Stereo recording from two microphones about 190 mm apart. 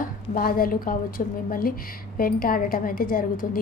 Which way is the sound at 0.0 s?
50° left (ahead or behind).